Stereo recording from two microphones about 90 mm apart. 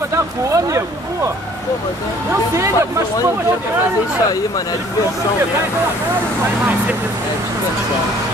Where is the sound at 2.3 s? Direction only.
35° right (ahead or behind).